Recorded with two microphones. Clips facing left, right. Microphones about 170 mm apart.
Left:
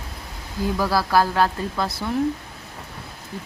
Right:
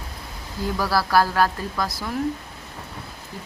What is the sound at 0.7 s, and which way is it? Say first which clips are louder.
Speech: even; 20° left (ahead or behind).